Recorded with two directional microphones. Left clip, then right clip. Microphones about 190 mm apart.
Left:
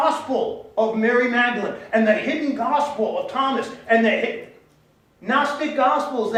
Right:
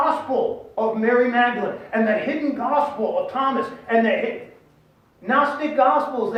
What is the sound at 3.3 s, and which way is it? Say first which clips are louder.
Speech: even; 40° left (ahead or behind).